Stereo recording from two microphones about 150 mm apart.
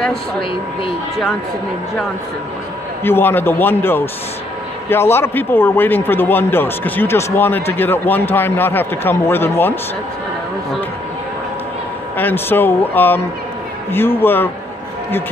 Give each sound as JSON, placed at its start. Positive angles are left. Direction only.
{"t": 3.0, "sound": "a man's voice", "side_deg": 15}
{"t": 12.2, "sound": "a man's voice", "side_deg": 15}